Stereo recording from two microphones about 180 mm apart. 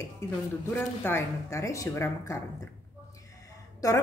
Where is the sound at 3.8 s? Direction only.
20° left (ahead or behind).